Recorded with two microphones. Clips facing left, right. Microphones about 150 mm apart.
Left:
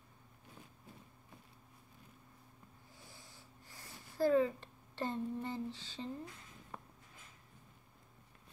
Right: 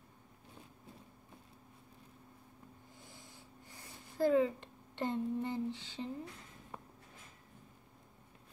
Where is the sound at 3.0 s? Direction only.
20° right (ahead or behind).